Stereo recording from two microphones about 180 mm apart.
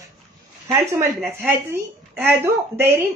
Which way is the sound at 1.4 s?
10° right (ahead or behind).